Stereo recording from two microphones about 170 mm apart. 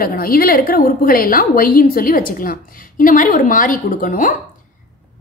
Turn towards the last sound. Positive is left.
turn(degrees=55)  # may be behind; listen again after turning